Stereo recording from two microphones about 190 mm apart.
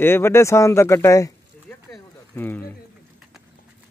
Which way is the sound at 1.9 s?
10° left (ahead or behind).